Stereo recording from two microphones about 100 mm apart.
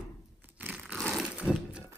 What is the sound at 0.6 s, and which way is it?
Crumpling, 20° right (ahead or behind).